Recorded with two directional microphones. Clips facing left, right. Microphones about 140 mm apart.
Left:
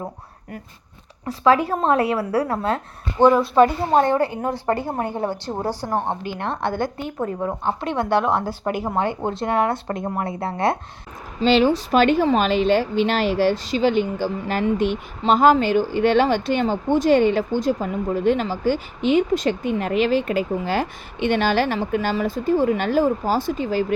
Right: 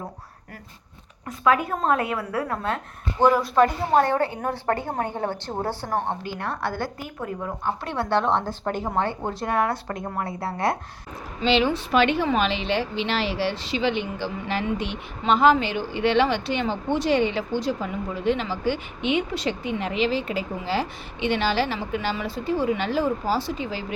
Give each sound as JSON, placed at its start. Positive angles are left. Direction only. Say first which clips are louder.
{"t": 1.3, "sound": "a woman's voice", "louder": "left 4 dB", "side_deg": 30}
{"t": 4.2, "sound": "a woman's voice", "louder": "left 3 dB", "side_deg": 15}
{"t": 8.2, "sound": "a woman's voice", "louder": "left 2 dB", "side_deg": 5}
{"t": 11.4, "sound": "speech", "louder": "left 5 dB", "side_deg": 40}